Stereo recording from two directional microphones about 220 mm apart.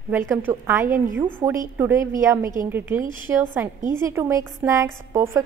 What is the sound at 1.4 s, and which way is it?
A woman's voice, 15° right (ahead or behind).